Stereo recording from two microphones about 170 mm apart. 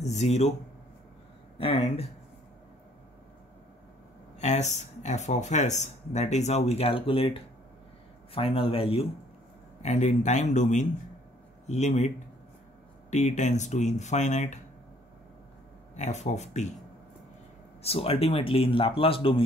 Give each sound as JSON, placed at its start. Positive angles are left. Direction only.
{"t": 0.0, "sound": "speech", "side_deg": 40}
{"t": 1.6, "sound": "speech", "side_deg": 35}
{"t": 4.4, "sound": "speech", "side_deg": 40}
{"t": 13.1, "sound": "speech", "side_deg": 45}
{"t": 16.0, "sound": "speech", "side_deg": 45}
{"t": 17.8, "sound": "speech", "side_deg": 35}